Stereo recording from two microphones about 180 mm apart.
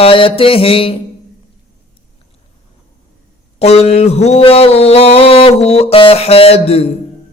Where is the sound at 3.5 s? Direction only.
35° left (ahead or behind).